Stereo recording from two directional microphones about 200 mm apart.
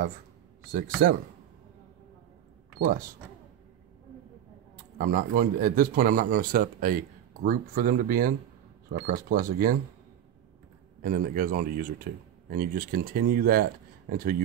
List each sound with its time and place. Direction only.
0.7 s speech: 45° right (ahead or behind)
4.7 s speech: 45° right (ahead or behind)
11.0 s speech: 45° right (ahead or behind)